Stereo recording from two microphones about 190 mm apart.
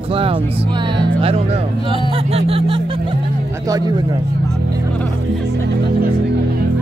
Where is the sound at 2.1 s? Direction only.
30° right (ahead or behind).